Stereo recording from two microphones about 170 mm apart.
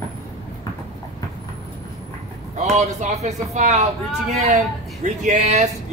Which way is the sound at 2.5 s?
40° right (ahead or behind).